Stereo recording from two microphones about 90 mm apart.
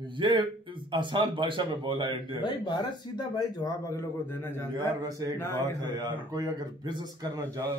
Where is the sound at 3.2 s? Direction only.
45° left (ahead or behind).